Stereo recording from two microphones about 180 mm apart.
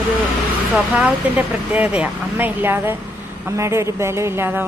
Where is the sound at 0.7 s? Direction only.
5° right (ahead or behind).